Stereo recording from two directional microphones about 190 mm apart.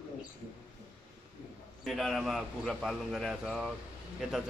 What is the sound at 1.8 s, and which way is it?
Speech, centre (ahead or behind).